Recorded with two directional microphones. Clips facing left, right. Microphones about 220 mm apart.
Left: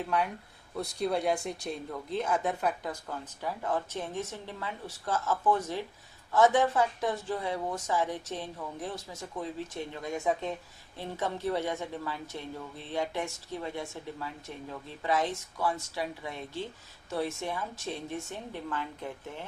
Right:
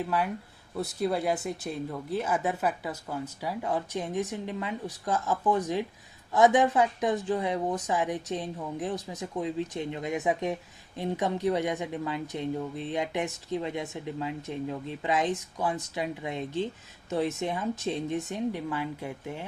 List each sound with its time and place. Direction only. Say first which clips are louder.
0.0 s speech: right 2 dB; 5° right (ahead or behind)